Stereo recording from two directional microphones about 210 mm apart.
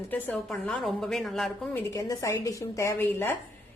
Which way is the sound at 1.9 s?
15° left (ahead or behind).